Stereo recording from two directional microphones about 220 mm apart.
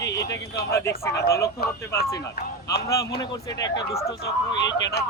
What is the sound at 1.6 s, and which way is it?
Speech, 45° left (ahead or behind).